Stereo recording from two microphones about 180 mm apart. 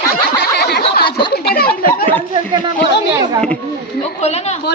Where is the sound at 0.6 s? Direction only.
60° left (ahead or behind).